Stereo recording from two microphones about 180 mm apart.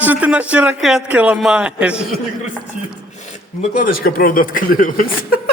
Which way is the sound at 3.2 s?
40° left (ahead or behind).